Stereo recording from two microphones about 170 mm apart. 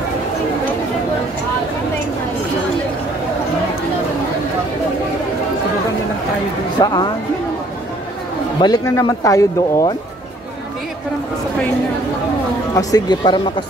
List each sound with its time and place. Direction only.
6.8 s speech: 25° left (ahead or behind)
8.5 s speech: 25° left (ahead or behind)
12.7 s speech: 25° left (ahead or behind)